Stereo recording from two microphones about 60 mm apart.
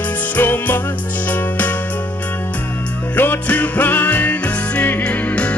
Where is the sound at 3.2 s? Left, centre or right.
Left.